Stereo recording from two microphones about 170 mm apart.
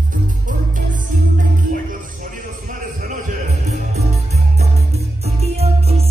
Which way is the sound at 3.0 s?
50° right (ahead or behind).